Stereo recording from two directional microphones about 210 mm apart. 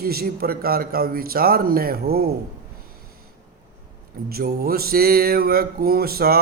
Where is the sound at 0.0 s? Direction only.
45° right (ahead or behind).